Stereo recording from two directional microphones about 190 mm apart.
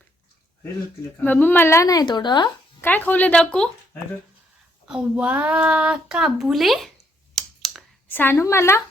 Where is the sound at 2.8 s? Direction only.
10° left (ahead or behind).